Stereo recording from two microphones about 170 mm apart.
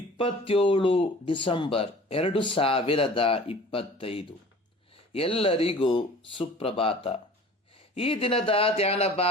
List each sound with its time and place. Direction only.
0.2 s speech: 35° left (ahead or behind)